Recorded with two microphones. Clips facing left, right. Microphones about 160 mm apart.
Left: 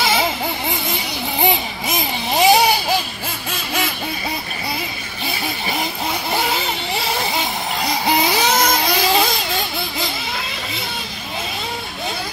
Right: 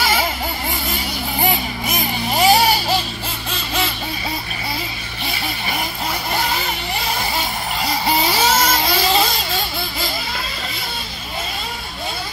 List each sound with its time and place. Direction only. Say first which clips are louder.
0.0 s vehicle: left 1 dB; 20° left (ahead or behind)
1.4 s vehicle: left 1 dB; 20° left (ahead or behind)
8.1 s vehicle: even; 15° left (ahead or behind)